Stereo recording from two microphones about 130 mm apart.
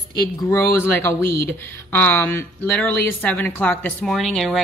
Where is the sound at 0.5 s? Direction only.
20° left (ahead or behind).